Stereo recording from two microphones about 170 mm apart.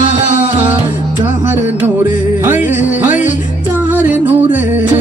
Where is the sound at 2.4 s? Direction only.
10° right (ahead or behind).